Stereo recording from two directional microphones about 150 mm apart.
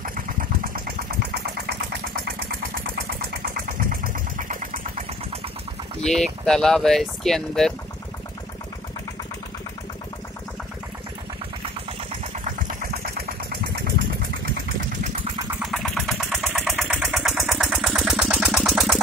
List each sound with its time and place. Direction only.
0.0 s engine: 70° right (ahead or behind)
6.0 s speech: 5° left (ahead or behind)
15.6 s vehicle: centre (ahead or behind)
16.7 s engine: 10° right (ahead or behind)